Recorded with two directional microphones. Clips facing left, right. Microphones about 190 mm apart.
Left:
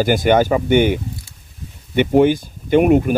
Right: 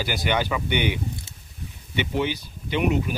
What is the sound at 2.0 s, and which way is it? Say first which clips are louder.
Speech: left 12 dB; 50° left (ahead or behind).